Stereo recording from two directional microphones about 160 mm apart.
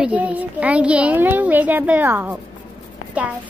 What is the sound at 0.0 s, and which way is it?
A woman's voice, 10° right (ahead or behind).